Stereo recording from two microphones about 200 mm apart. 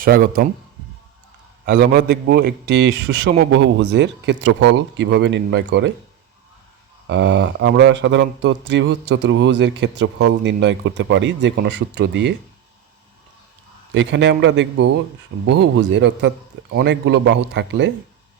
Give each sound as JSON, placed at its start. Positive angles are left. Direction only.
{"t": 0.0, "sound": "speech", "side_deg": -45}
{"t": 1.6, "sound": "speech", "side_deg": -50}
{"t": 7.1, "sound": "speech", "side_deg": -65}
{"t": 13.9, "sound": "speech", "side_deg": -60}